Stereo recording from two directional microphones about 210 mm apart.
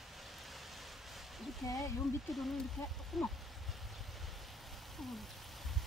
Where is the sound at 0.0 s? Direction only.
Centre (ahead or behind).